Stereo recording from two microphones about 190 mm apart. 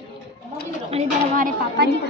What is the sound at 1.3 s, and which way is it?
Speech, 50° right (ahead or behind).